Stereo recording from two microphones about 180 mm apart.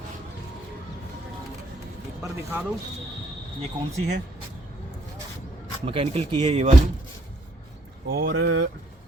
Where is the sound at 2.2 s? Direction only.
15° right (ahead or behind).